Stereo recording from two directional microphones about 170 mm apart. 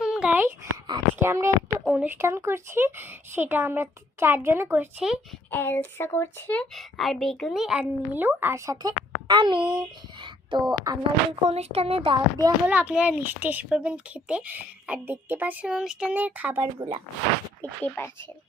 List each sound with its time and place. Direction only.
0.0 s a sound: 5° right (ahead or behind)
0.6 s a sound: 20° right (ahead or behind)
1.8 s speech: 10° right (ahead or behind)
5.5 s speech: 10° left (ahead or behind); by 11.3 s 20° right (ahead or behind)
11.4 s speech: 40° right (ahead or behind)
12.6 s speech: 10° right (ahead or behind)
17.6 s speech: 10° left (ahead or behind)